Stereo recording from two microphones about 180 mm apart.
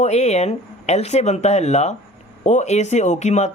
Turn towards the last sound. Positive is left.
turn(degrees=40)  # may be behind; listen again after turning